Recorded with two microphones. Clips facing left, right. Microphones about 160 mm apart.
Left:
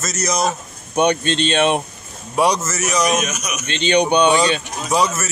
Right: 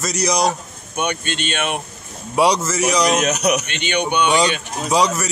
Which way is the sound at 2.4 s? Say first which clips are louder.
Right 1 dB; 10° right (ahead or behind).